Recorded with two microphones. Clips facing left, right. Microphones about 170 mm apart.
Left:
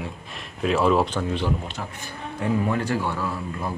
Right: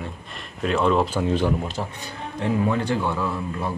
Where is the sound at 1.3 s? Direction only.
40° right (ahead or behind).